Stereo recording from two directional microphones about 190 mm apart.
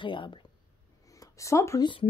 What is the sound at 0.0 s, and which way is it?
Speech, 25° left (ahead or behind).